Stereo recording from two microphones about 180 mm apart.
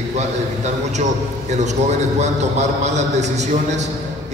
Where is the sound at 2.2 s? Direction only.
40° right (ahead or behind).